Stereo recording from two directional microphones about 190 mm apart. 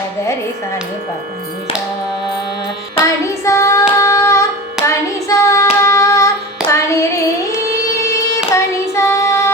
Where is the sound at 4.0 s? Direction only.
15° left (ahead or behind).